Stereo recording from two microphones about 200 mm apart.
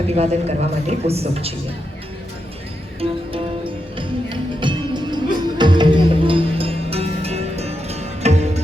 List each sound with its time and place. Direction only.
0.1 s a woman's voice: 30° right (ahead or behind)
3.0 s music: 25° right (ahead or behind)